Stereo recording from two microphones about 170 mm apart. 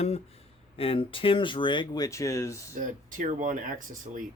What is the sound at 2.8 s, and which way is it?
Speech, 50° right (ahead or behind).